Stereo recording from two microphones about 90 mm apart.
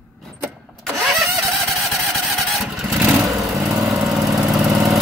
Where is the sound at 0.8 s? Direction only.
Centre (ahead or behind).